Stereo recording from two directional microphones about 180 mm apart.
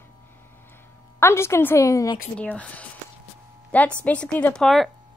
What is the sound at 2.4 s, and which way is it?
A woman's voice, 10° left (ahead or behind).